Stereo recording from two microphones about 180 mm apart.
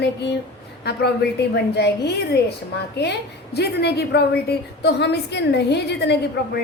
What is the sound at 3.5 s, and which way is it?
A woman's voice, 65° left (ahead or behind).